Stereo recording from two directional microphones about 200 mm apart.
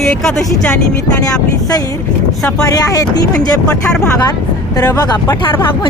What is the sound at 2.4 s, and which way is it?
Speech, 15° left (ahead or behind).